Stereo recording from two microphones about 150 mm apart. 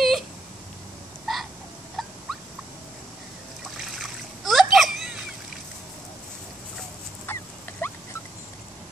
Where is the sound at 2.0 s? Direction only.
Centre (ahead or behind).